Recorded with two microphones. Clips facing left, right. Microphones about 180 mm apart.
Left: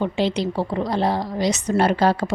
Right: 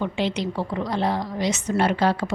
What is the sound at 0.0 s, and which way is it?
Speech, 35° left (ahead or behind).